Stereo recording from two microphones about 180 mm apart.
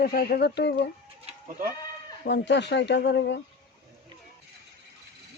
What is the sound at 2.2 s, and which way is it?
Speech, 75° left (ahead or behind).